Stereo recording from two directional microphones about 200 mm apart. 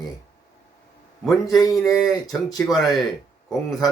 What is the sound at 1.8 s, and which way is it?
A man's voice, centre (ahead or behind).